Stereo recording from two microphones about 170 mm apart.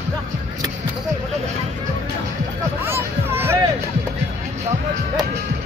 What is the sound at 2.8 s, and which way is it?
Music, 15° right (ahead or behind).